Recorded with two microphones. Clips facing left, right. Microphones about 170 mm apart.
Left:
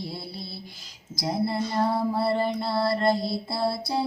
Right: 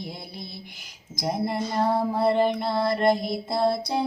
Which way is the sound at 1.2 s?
15° right (ahead or behind).